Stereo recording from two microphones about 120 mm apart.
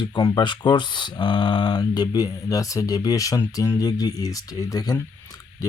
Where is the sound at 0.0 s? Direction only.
35° left (ahead or behind).